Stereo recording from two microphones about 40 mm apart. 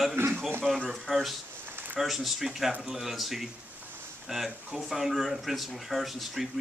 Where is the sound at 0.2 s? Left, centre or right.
Right.